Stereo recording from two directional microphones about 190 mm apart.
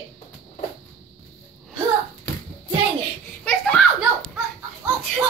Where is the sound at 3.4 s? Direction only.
5° left (ahead or behind).